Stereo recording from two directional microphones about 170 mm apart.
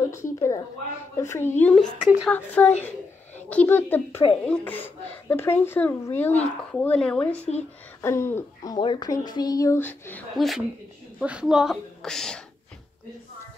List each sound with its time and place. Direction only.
0.1 s a woman's voice: 15° left (ahead or behind)
1.6 s speech: 5° left (ahead or behind)
8.0 s a sound: 15° left (ahead or behind)
8.7 s speech: 25° left (ahead or behind)
10.3 s a woman's voice: centre (ahead or behind)